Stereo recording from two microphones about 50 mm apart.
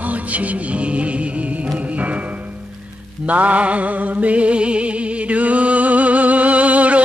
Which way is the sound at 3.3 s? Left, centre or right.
Right.